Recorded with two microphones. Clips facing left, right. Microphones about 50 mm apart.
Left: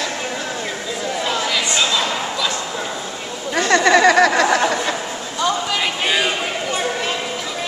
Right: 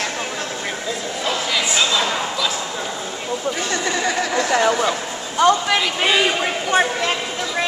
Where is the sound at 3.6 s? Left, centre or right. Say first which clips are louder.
Left 9 dB; left.